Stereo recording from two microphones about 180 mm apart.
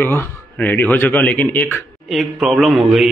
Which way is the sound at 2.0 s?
Centre (ahead or behind).